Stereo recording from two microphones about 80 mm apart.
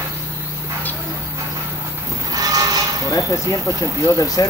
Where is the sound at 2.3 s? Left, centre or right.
Right.